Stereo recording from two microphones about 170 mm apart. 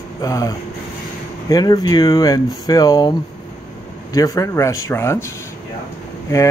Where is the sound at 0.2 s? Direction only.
20° left (ahead or behind).